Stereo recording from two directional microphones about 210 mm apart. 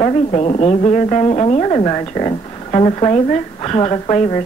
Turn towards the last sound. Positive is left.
turn(degrees=25)  # may be behind; listen again after turning